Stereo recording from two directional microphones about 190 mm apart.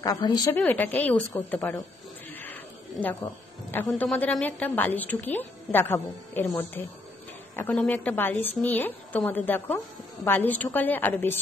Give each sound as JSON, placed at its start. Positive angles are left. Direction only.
{"t": 0.0, "sound": "a woman's voice", "side_deg": 20}
{"t": 0.6, "sound": "a woman's voice", "side_deg": 10}
{"t": 2.3, "sound": "a sound", "side_deg": 10}
{"t": 3.7, "sound": "a woman's voice", "side_deg": 10}